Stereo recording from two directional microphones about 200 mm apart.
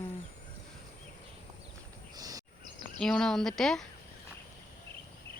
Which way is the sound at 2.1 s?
20° right (ahead or behind).